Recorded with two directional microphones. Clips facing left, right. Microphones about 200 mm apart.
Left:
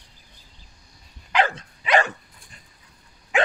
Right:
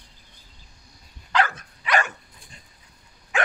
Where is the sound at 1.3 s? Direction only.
25° left (ahead or behind).